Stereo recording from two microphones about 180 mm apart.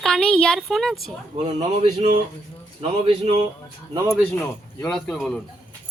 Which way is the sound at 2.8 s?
35° right (ahead or behind).